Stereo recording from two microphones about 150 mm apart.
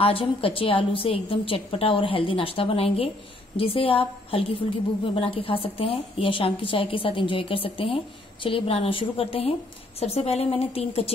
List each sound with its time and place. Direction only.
0.0 s a woman's voice: 40° left (ahead or behind)